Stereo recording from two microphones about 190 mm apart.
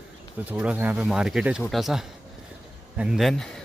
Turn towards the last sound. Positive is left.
turn(degrees=0)  # may be behind; listen again after turning